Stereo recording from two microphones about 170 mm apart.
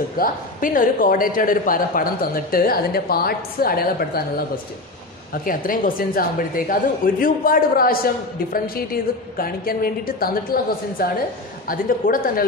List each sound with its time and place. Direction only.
0.2 s a woman's voice: 55° left (ahead or behind)
5.3 s a woman's voice: 55° left (ahead or behind)